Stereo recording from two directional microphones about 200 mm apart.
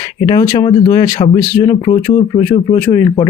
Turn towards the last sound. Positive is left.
turn(degrees=25)  # may be behind; listen again after turning